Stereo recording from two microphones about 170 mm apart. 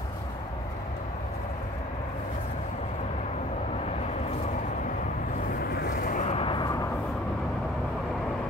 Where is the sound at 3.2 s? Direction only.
40° left (ahead or behind); by 7.0 s 20° left (ahead or behind).